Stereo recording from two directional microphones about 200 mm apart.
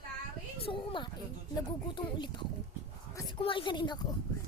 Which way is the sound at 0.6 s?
25° left (ahead or behind).